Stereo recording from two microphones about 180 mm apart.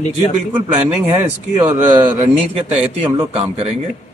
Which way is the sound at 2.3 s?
35° right (ahead or behind).